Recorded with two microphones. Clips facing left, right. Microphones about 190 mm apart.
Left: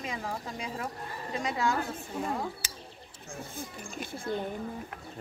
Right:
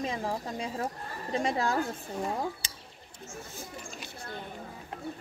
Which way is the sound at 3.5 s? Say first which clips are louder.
Left 3 dB; 50° left (ahead or behind).